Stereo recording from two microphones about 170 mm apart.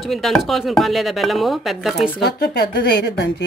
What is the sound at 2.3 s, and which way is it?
Speech, 70° left (ahead or behind).